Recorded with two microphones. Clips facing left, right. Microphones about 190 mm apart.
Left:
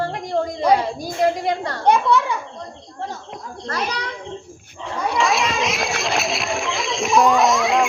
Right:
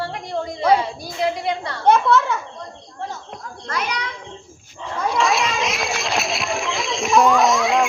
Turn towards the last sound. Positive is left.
turn(degrees=0)  # may be behind; listen again after turning